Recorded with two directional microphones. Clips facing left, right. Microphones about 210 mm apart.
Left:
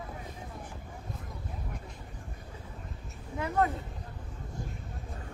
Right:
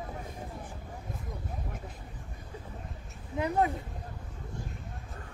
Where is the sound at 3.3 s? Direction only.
15° right (ahead or behind).